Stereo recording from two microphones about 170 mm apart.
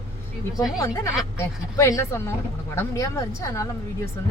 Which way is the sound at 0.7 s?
20° left (ahead or behind).